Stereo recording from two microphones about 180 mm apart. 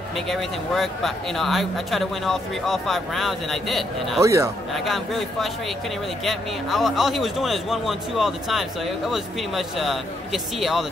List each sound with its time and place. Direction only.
0.3 s a man's voice: centre (ahead or behind)
4.2 s speech: 15° right (ahead or behind)
4.7 s a man's voice: centre (ahead or behind)